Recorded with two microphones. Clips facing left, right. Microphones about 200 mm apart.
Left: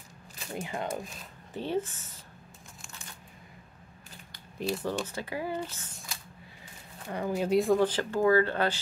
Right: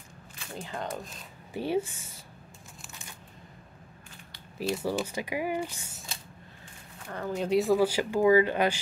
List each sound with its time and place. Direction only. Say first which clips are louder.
0.6 s speech: left 2 dB; 10° left (ahead or behind)
1.5 s speech: right 2 dB; 10° right (ahead or behind)
4.7 s speech: right 2 dB; 10° right (ahead or behind)
7.1 s speech: left 2 dB; 15° left (ahead or behind)
7.3 s speech: right 1 dB; centre (ahead or behind)